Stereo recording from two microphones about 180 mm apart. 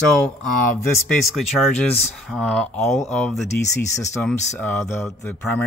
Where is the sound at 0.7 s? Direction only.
10° left (ahead or behind).